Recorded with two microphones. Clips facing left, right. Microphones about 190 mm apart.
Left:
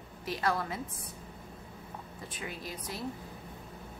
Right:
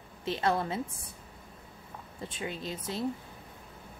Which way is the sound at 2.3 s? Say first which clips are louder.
Right 4 dB; 25° right (ahead or behind).